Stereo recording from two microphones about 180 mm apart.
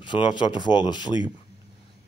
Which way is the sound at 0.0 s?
25° left (ahead or behind).